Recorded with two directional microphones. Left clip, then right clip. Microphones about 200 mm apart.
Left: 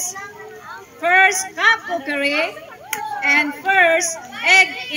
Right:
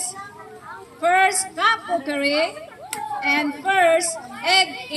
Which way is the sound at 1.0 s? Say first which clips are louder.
Left 3 dB; 25° right (ahead or behind).